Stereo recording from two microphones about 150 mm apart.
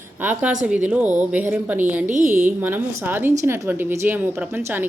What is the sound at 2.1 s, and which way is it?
Speech, 60° right (ahead or behind).